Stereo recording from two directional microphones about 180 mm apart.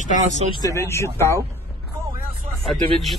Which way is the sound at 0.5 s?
15° left (ahead or behind).